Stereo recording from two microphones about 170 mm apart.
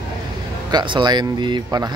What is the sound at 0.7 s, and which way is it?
Speech, 25° right (ahead or behind).